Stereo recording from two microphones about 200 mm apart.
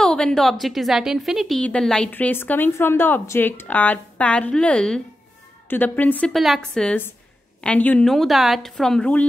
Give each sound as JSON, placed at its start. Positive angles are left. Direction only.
{"t": 0.0, "sound": "a woman's voice", "side_deg": 5}